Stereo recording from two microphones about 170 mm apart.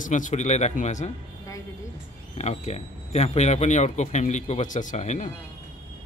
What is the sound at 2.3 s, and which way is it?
Speech, 40° left (ahead or behind).